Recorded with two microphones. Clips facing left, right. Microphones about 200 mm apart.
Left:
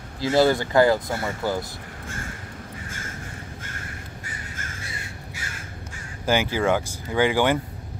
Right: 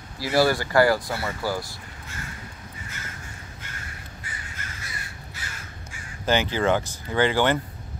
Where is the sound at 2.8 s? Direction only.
50° left (ahead or behind).